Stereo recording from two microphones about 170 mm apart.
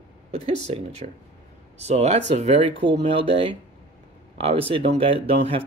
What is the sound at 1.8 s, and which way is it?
Speech, 40° right (ahead or behind).